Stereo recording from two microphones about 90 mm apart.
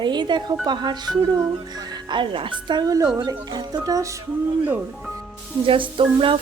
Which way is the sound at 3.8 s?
40° right (ahead or behind).